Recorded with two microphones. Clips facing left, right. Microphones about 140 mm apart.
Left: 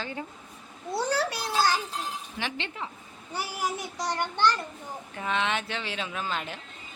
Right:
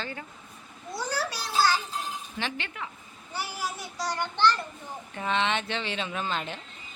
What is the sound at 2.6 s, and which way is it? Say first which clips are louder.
Speech: left 2 dB; 25° left (ahead or behind).